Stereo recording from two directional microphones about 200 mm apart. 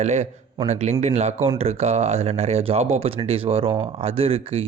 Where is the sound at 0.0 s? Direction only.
35° right (ahead or behind).